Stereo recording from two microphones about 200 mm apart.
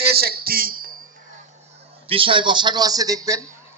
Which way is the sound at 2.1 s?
25° right (ahead or behind).